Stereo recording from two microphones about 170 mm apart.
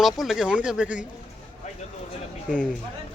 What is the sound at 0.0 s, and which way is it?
Speech, centre (ahead or behind).